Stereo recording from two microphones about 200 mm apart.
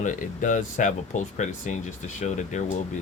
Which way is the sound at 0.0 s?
40° left (ahead or behind).